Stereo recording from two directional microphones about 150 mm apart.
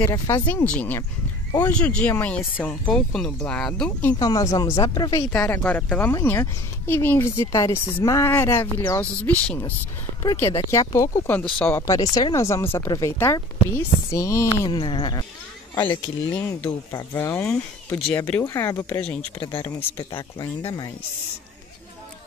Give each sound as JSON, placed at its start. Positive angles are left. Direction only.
{"t": 0.0, "sound": "speech", "side_deg": 15}
{"t": 4.2, "sound": "speech", "side_deg": 25}
{"t": 5.3, "sound": "speech", "side_deg": 10}
{"t": 14.6, "sound": "speech", "side_deg": 30}
{"t": 16.3, "sound": "speech", "side_deg": 15}
{"t": 17.5, "sound": "speech", "side_deg": 5}
{"t": 20.0, "sound": "speech", "side_deg": 30}